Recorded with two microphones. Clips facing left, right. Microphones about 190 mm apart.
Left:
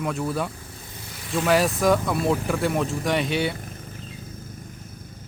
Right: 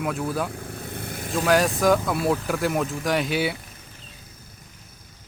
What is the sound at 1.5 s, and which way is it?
Speech, centre (ahead or behind).